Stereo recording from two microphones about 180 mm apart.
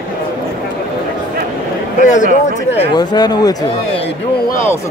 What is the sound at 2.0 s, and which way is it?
Speech, 45° left (ahead or behind).